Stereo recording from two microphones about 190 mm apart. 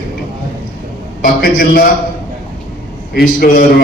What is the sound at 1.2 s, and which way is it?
Speech, 50° left (ahead or behind).